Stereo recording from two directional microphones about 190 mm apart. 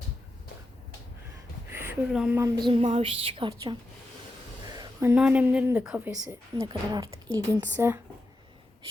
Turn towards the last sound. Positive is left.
turn(degrees=-15)  # may be behind; listen again after turning